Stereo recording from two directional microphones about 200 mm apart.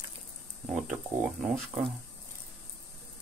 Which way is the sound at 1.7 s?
30° right (ahead or behind).